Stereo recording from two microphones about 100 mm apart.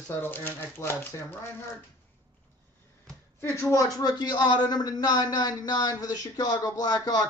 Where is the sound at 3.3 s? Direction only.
30° left (ahead or behind).